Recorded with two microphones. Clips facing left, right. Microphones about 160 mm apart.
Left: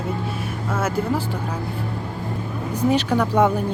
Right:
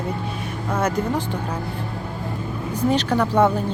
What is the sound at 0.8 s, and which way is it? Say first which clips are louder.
Speech: right 1 dB; 5° left (ahead or behind).